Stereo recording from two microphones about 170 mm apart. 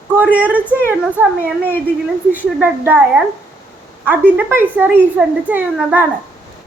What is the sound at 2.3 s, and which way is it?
A woman's voice, 10° right (ahead or behind).